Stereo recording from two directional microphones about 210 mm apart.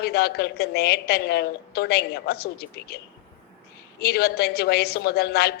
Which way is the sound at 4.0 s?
50° left (ahead or behind).